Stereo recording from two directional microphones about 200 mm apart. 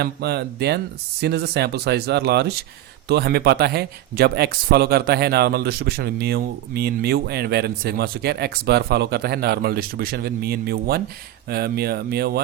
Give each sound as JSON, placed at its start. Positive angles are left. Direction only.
{"t": 0.0, "sound": "speech", "side_deg": -55}